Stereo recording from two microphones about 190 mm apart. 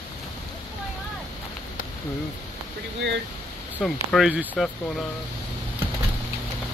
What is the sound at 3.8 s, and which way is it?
Speech, centre (ahead or behind).